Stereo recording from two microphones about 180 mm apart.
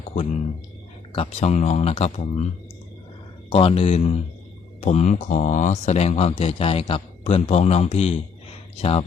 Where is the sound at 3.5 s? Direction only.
30° left (ahead or behind).